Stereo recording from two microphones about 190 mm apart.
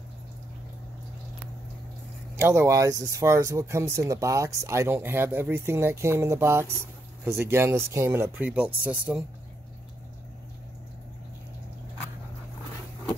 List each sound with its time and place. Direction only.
2.3 s speech: 15° right (ahead or behind)